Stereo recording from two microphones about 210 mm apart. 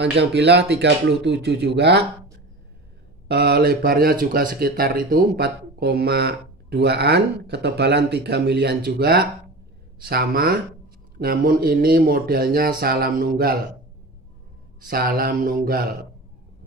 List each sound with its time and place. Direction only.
0.0 s speech: 55° right (ahead or behind)
3.3 s speech: 50° right (ahead or behind)
14.9 s speech: 45° right (ahead or behind)